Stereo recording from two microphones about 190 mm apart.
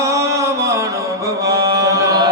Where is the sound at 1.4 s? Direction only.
15° right (ahead or behind).